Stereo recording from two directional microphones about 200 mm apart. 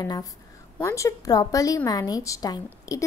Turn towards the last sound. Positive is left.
turn(degrees=15)  # may be behind; listen again after turning